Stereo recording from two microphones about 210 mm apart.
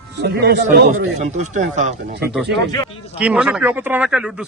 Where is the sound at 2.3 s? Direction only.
Centre (ahead or behind).